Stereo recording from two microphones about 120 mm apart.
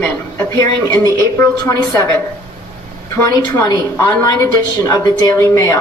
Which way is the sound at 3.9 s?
20° left (ahead or behind).